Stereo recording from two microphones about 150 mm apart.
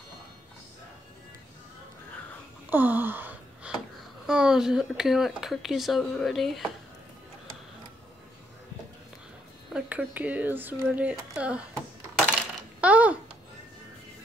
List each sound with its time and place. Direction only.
2.7 s gasp: 10° right (ahead or behind)
4.3 s speech: 5° right (ahead or behind)
9.8 s speech: 10° right (ahead or behind)
12.8 s babbling: 10° right (ahead or behind)